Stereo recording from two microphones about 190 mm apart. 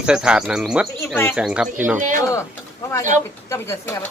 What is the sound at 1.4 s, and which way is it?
Speech, 5° right (ahead or behind).